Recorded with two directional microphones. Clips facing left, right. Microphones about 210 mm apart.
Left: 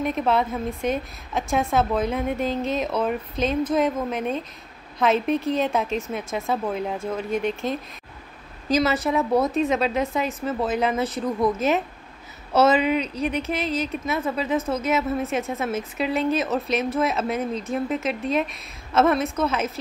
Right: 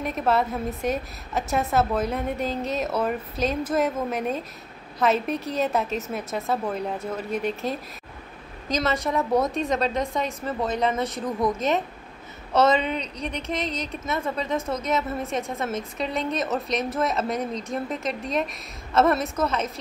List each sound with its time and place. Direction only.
0.0 s a woman's voice: centre (ahead or behind)